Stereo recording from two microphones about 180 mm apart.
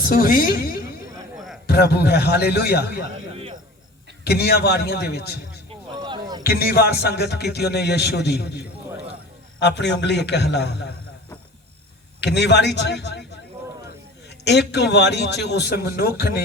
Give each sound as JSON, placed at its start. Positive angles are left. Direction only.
{"t": 0.0, "sound": "a man's voice", "side_deg": 55}
{"t": 4.2, "sound": "a man's voice", "side_deg": 65}
{"t": 6.0, "sound": "a sound", "side_deg": -25}
{"t": 6.4, "sound": "a man's voice", "side_deg": 60}
{"t": 9.6, "sound": "a man's voice", "side_deg": 75}
{"t": 12.2, "sound": "a man's voice", "side_deg": 70}
{"t": 14.4, "sound": "a man's voice", "side_deg": 70}